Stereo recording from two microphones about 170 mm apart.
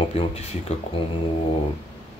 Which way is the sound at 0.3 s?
35° left (ahead or behind).